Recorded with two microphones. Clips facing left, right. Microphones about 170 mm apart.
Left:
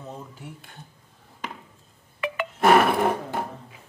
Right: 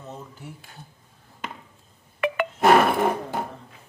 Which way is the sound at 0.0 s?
Centre (ahead or behind).